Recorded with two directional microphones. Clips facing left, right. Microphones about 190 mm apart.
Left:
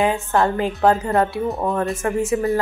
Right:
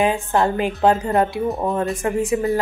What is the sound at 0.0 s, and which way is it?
Speech, 20° right (ahead or behind).